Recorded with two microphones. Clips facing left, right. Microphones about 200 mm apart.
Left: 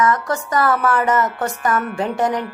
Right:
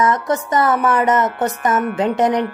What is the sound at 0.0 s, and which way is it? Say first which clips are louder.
Speech: right 1 dB; 20° right (ahead or behind).